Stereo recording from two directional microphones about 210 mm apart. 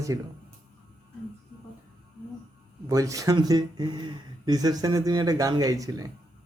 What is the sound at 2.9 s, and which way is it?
Speech, 15° right (ahead or behind).